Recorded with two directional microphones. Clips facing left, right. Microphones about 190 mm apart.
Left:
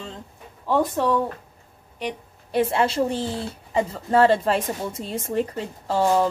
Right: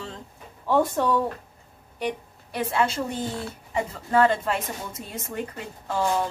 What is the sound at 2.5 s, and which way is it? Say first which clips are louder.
A woman's voice: left 4 dB; 30° left (ahead or behind).